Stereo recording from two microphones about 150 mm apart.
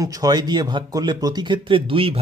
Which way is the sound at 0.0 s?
25° right (ahead or behind).